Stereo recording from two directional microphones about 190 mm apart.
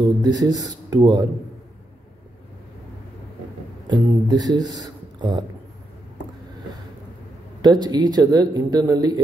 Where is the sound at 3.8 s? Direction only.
20° right (ahead or behind).